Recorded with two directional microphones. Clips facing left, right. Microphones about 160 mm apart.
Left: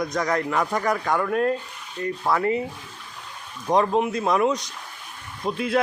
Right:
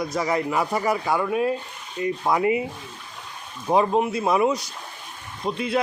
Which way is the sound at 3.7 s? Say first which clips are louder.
Even; 5° right (ahead or behind).